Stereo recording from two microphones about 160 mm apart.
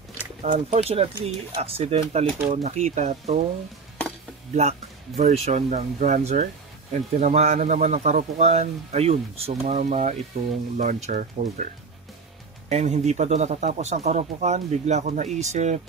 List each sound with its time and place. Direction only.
0.4 s a man's voice: 45° right (ahead or behind)
4.6 s a man's voice: 45° right (ahead or behind)